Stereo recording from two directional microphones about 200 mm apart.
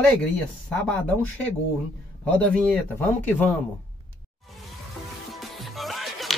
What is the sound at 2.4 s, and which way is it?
Speech, 5° left (ahead or behind).